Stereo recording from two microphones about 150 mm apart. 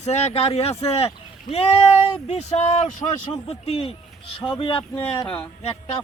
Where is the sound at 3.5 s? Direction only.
40° left (ahead or behind).